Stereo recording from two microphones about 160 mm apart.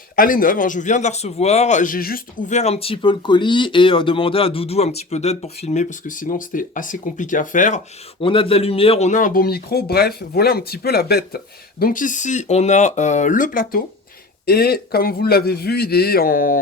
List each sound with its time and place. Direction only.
0.2 s a man's voice: 60° left (ahead or behind)
2.5 s speech: 45° left (ahead or behind)
8.2 s speech: 35° left (ahead or behind); by 11.3 s 75° left (ahead or behind)
11.8 s a man's voice: 60° left (ahead or behind)
14.4 s speech: 70° left (ahead or behind)